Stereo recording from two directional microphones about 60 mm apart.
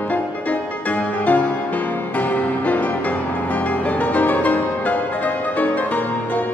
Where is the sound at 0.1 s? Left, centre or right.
Left.